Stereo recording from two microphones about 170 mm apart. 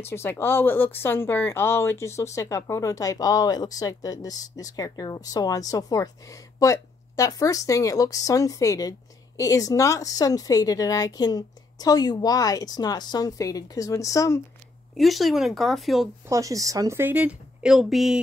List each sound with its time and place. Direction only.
0.0 s speech: 15° left (ahead or behind)
15.0 s speech: centre (ahead or behind)
16.3 s a woman's voice: 20° right (ahead or behind); by 18.2 s centre (ahead or behind)